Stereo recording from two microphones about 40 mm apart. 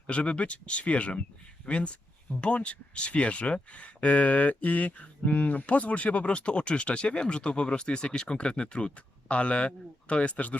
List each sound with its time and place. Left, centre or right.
0.1 s speech: left